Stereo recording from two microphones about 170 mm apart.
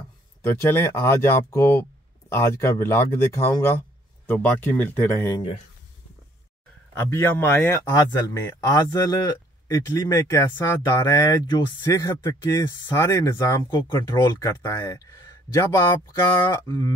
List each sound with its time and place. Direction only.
0.4 s speech: 15° left (ahead or behind)
5.3 s speech: 30° left (ahead or behind)
6.9 s a man's voice: 15° left (ahead or behind)